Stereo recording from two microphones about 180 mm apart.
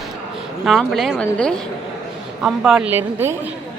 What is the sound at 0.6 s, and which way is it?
A woman's voice, centre (ahead or behind).